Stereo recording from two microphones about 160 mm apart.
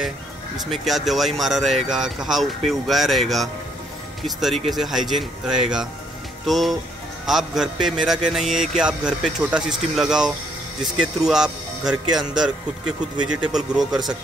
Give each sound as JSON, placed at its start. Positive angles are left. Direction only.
{"t": 0.7, "sound": "speech", "side_deg": 0}